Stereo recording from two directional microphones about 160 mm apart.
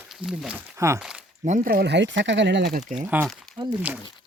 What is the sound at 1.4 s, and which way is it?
Speech, 50° right (ahead or behind).